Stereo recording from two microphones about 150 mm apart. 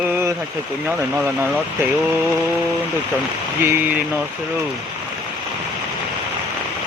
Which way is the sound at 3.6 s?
15° right (ahead or behind).